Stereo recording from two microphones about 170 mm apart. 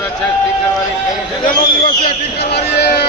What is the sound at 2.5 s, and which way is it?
Speech, 70° left (ahead or behind).